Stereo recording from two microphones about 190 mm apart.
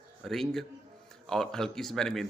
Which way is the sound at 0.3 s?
Centre (ahead or behind).